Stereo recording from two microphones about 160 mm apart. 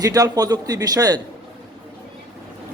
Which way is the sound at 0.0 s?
20° right (ahead or behind).